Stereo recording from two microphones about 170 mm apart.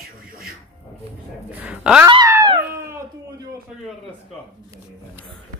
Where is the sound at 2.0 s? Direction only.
25° right (ahead or behind).